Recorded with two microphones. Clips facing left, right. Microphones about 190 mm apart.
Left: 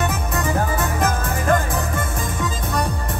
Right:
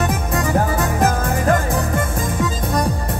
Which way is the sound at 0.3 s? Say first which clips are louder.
Right 5 dB; 45° right (ahead or behind).